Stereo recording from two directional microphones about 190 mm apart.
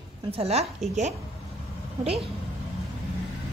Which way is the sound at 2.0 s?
30° right (ahead or behind).